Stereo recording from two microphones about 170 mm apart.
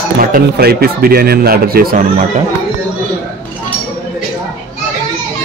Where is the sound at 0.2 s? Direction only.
60° right (ahead or behind).